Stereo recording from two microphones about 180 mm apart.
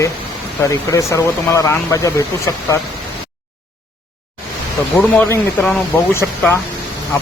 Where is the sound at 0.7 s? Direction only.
15° left (ahead or behind).